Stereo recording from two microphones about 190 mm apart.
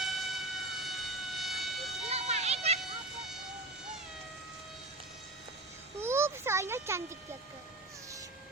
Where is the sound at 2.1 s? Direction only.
35° right (ahead or behind).